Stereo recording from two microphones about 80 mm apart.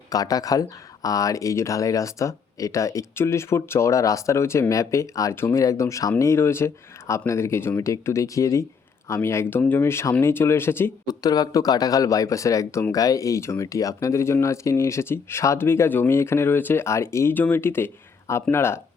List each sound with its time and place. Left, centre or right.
0.1 s speech: left
11.0 s speech: left
17.3 s speech: left